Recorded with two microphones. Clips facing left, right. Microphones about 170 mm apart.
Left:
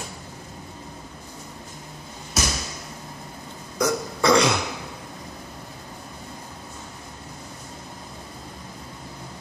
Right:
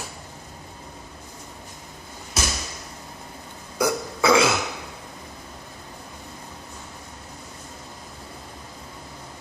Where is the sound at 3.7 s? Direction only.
5° right (ahead or behind).